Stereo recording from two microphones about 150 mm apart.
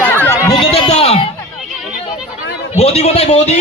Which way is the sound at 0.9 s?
45° left (ahead or behind).